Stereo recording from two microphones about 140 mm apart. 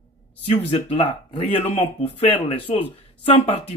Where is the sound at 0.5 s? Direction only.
45° left (ahead or behind).